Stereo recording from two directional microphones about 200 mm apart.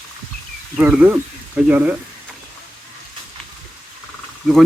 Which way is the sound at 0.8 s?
10° right (ahead or behind).